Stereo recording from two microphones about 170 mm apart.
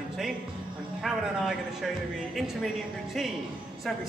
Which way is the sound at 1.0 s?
Centre (ahead or behind).